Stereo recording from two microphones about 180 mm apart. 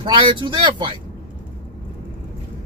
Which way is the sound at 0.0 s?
25° right (ahead or behind).